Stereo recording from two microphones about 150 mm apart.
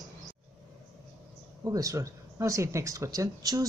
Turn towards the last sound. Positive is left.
turn(degrees=-25)  # may be behind; listen again after turning